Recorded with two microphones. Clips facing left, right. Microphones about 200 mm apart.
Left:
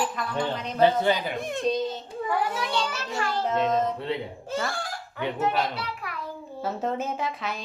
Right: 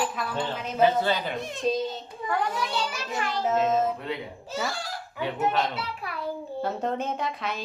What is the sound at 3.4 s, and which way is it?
Speech, 5° right (ahead or behind).